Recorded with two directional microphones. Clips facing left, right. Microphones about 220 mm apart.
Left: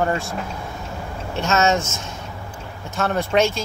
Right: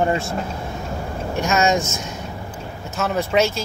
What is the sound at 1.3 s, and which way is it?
Speech, 10° right (ahead or behind).